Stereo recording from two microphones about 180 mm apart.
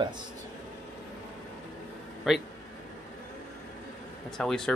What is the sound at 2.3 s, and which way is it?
Speech, centre (ahead or behind).